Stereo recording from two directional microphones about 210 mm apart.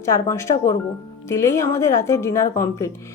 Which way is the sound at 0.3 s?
15° left (ahead or behind).